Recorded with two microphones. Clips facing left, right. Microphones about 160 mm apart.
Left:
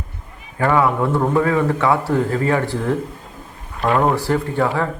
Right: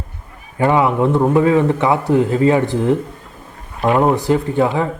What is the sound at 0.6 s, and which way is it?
Speech, 20° right (ahead or behind).